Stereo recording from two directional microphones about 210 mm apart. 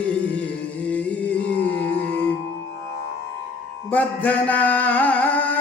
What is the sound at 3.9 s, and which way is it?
Music, 5° left (ahead or behind).